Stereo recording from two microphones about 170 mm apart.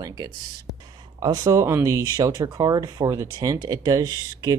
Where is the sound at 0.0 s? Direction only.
20° right (ahead or behind).